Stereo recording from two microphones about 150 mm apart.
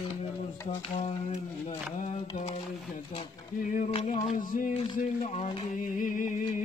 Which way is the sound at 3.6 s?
60° left (ahead or behind).